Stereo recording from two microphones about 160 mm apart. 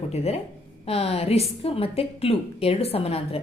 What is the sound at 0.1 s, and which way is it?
A woman's voice, 40° left (ahead or behind).